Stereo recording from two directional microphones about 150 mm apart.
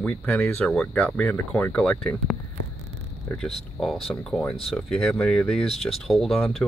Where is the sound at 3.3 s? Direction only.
5° left (ahead or behind).